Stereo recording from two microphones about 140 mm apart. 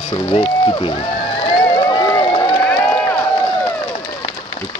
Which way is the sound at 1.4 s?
40° left (ahead or behind).